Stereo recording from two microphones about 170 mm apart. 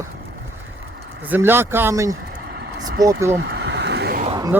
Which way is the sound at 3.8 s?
75° right (ahead or behind).